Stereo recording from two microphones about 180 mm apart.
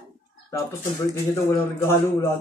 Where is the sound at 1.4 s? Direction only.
15° left (ahead or behind).